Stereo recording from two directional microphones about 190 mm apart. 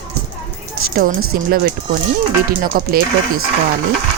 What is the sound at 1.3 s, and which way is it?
Speech, 50° right (ahead or behind).